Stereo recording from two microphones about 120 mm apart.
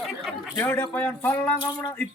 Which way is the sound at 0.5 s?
20° left (ahead or behind).